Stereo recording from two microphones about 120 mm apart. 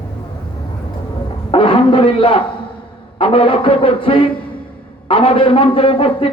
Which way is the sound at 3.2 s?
50° left (ahead or behind).